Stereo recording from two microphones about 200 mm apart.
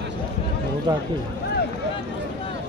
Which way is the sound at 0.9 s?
20° right (ahead or behind).